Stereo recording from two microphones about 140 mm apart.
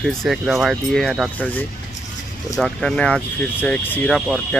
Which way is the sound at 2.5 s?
Centre (ahead or behind).